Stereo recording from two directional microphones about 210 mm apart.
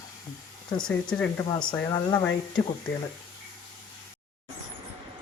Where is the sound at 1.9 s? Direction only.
20° left (ahead or behind).